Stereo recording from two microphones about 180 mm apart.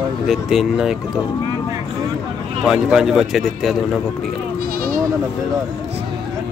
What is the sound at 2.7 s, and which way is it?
A man's voice, centre (ahead or behind).